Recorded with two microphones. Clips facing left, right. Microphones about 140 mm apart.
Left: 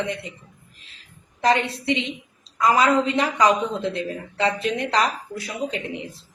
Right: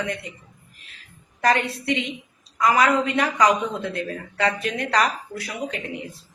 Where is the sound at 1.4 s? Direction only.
25° left (ahead or behind).